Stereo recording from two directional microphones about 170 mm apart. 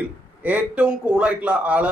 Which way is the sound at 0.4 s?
10° right (ahead or behind).